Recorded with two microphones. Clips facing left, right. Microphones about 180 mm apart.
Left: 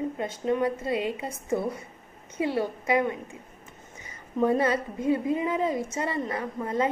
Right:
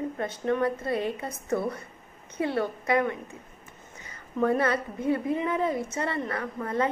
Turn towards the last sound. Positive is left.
turn(degrees=20)  # may be behind; listen again after turning